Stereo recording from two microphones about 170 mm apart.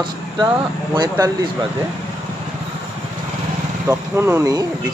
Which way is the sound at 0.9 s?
20° right (ahead or behind).